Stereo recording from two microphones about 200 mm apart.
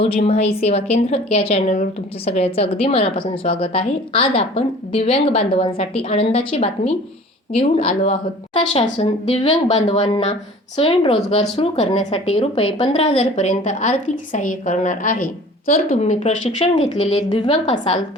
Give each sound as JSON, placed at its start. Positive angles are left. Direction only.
{"t": 0.0, "sound": "a woman's voice", "side_deg": 30}